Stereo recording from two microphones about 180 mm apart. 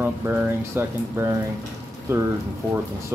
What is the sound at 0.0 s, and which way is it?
Speech, 10° right (ahead or behind).